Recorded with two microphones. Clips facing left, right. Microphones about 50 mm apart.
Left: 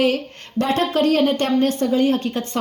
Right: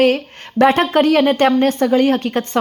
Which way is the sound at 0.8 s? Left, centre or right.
Right.